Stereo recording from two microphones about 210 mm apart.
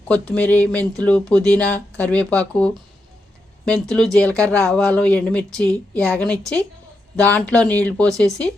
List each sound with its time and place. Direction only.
0.1 s speech: 5° left (ahead or behind)